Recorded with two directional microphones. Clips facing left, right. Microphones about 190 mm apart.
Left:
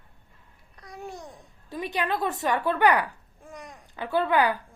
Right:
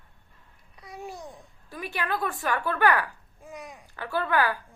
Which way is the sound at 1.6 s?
20° left (ahead or behind).